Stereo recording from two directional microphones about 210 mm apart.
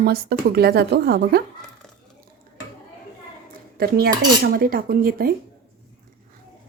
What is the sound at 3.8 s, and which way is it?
A woman's voice, 45° right (ahead or behind).